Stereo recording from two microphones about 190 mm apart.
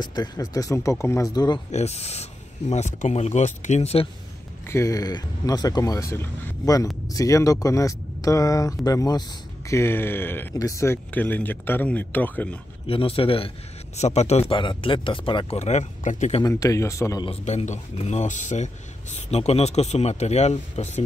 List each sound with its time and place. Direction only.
0.0 s speech: 20° left (ahead or behind)
1.7 s speech: 35° left (ahead or behind)
4.6 s speech: 15° left (ahead or behind)
12.8 s speech: 30° left (ahead or behind)
16.4 s speech: 15° left (ahead or behind)
17.3 s speech: 35° left (ahead or behind)